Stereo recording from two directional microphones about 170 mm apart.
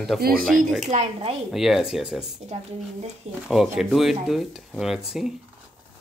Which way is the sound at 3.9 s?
Centre (ahead or behind).